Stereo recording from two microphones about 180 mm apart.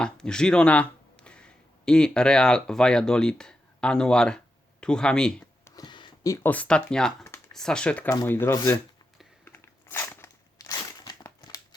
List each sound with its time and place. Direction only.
0.0 s speech: 5° left (ahead or behind)
5.6 s speech: 20° left (ahead or behind)
9.4 s a sound: 10° left (ahead or behind)
10.7 s crushing: 20° left (ahead or behind)